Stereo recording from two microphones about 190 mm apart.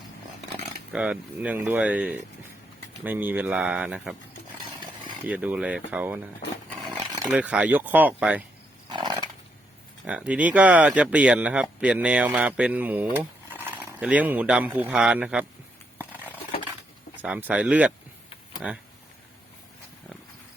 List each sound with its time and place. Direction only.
0.9 s speech: 5° right (ahead or behind)
5.3 s speech: 10° right (ahead or behind)
6.7 s wild animals: centre (ahead or behind)
7.3 s speech: 5° right (ahead or behind)
8.9 s a sound: 25° right (ahead or behind)
10.1 s a man's voice: 5° right (ahead or behind)
17.2 s speech: 5° right (ahead or behind)